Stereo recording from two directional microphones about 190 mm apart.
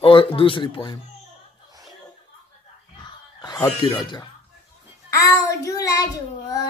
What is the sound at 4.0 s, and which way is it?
A child's voice, 25° left (ahead or behind).